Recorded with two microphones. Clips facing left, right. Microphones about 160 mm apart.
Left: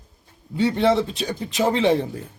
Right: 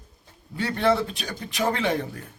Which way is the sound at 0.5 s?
20° left (ahead or behind).